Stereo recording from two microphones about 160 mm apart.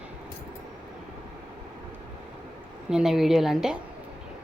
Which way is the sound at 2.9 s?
5° right (ahead or behind).